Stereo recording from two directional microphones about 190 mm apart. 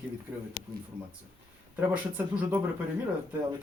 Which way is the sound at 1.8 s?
10° right (ahead or behind).